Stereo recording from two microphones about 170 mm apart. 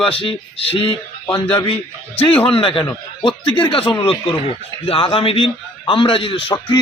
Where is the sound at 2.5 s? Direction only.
35° left (ahead or behind).